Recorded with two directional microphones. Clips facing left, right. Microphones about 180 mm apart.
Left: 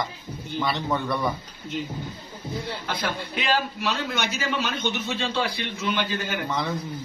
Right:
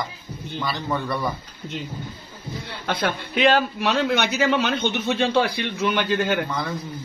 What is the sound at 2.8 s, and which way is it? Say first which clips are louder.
A man's voice: right 4 dB; 60° right (ahead or behind).